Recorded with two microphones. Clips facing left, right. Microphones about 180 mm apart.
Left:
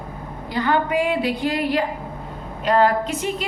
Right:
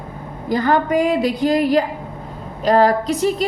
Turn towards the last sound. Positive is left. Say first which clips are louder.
# right 4 dB
turn(degrees=-40)  # may be behind; listen again after turning